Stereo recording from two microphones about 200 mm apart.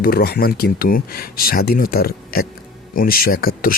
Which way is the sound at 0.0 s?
50° left (ahead or behind).